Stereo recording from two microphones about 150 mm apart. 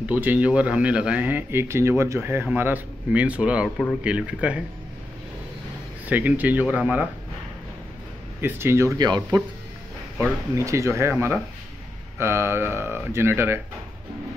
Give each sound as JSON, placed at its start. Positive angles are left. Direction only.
{"t": 0.1, "sound": "speech", "side_deg": -10}
{"t": 6.0, "sound": "speech", "side_deg": -10}
{"t": 8.4, "sound": "speech", "side_deg": -15}
{"t": 10.5, "sound": "speech", "side_deg": -20}